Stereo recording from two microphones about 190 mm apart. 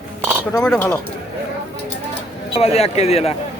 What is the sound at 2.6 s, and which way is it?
Speech, 30° left (ahead or behind).